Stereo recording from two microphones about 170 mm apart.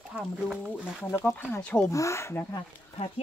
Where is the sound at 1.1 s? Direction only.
15° left (ahead or behind).